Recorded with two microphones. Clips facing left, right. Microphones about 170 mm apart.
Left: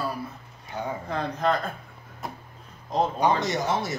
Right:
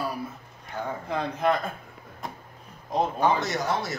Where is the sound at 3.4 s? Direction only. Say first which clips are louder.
Left 1 dB; 20° left (ahead or behind).